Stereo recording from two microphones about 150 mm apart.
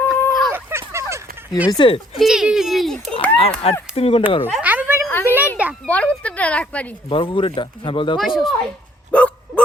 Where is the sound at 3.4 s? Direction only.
40° left (ahead or behind).